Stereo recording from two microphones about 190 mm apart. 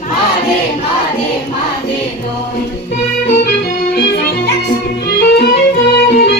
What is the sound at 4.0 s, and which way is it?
Music, 55° left (ahead or behind).